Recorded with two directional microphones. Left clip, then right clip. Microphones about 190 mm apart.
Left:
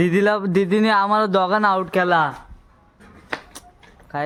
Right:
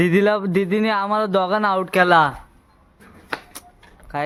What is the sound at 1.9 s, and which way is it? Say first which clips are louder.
Speech: right 3 dB; 50° right (ahead or behind).